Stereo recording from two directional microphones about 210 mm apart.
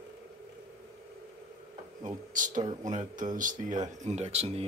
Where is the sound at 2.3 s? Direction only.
40° right (ahead or behind).